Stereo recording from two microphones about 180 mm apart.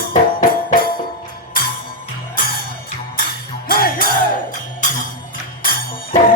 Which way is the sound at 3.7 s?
55° left (ahead or behind).